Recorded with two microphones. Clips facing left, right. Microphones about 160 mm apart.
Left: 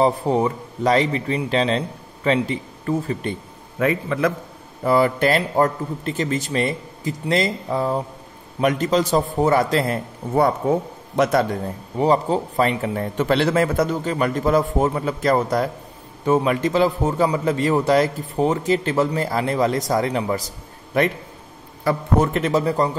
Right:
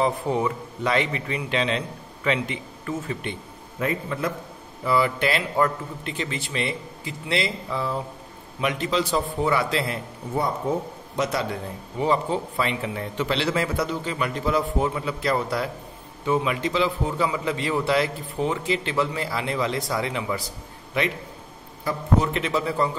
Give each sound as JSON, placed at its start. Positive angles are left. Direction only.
{"t": 0.0, "sound": "a man's voice", "side_deg": 35}
{"t": 3.8, "sound": "a man's voice", "side_deg": 90}
{"t": 4.8, "sound": "a man's voice", "side_deg": 45}
{"t": 11.1, "sound": "a man's voice", "side_deg": 50}
{"t": 22.2, "sound": "a man's voice", "side_deg": 45}